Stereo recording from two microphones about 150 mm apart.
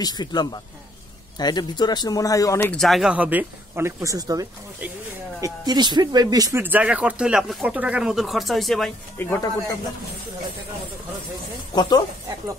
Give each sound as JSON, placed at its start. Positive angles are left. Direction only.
{"t": 0.0, "sound": "speech", "side_deg": 25}
{"t": 2.7, "sound": "speech", "side_deg": 0}
{"t": 6.6, "sound": "speech", "side_deg": -10}
{"t": 9.2, "sound": "speech", "side_deg": 20}
{"t": 11.7, "sound": "speech", "side_deg": 30}